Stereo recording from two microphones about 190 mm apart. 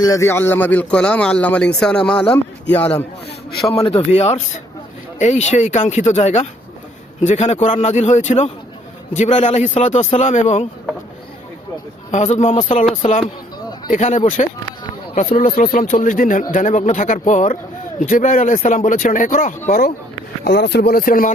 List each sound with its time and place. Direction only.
0.0 s speech: 15° left (ahead or behind)
3.8 s speech: 30° left (ahead or behind)
12.1 s speech: 40° left (ahead or behind)
20.4 s speech: 60° left (ahead or behind)